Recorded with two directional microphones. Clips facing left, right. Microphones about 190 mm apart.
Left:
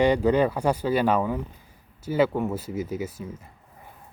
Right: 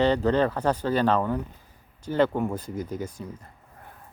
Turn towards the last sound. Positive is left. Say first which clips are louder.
# left 2 dB
turn(degrees=5)  # may be behind; listen again after turning